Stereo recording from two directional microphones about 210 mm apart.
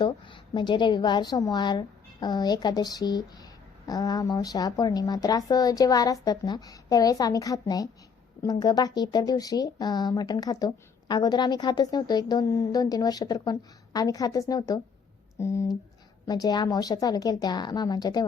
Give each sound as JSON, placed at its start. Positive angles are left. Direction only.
{"t": 0.0, "sound": "a woman's voice", "side_deg": 20}